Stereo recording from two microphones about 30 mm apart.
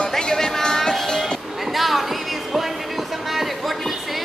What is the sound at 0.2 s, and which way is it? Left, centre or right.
Music, centre.